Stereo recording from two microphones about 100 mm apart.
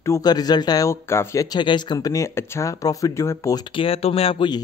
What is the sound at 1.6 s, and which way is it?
Speech, 50° left (ahead or behind).